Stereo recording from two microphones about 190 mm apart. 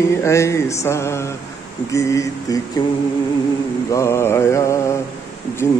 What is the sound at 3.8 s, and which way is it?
Mantra, 15° left (ahead or behind).